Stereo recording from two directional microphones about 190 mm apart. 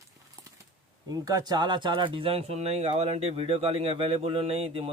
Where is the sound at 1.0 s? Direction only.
20° right (ahead or behind).